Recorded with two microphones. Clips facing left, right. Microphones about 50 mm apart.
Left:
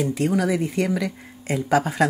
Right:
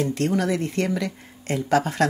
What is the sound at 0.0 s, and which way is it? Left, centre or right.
Speech, centre.